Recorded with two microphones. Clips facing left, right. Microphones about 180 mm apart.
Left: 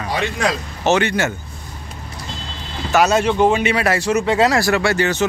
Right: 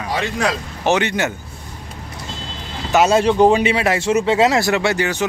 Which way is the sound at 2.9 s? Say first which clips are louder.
Right 1 dB; 25° right (ahead or behind).